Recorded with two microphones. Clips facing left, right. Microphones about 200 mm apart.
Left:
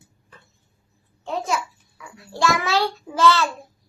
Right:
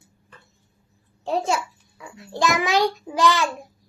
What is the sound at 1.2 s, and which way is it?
A child's voice, 30° right (ahead or behind).